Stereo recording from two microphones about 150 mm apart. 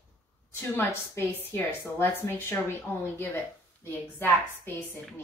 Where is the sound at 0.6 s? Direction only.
15° left (ahead or behind).